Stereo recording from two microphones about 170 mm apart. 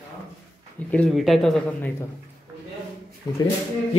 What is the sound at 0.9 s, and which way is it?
Speech, 5° left (ahead or behind).